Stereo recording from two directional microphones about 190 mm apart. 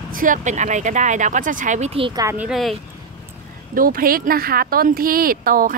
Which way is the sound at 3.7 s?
50° right (ahead or behind).